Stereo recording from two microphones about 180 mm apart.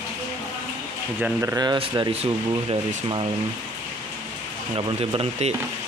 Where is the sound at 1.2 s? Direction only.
10° right (ahead or behind).